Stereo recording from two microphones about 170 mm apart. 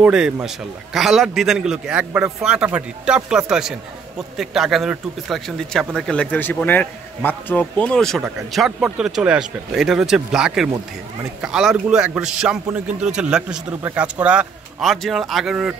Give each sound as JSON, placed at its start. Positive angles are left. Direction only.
{"t": 0.0, "sound": "speech", "side_deg": -5}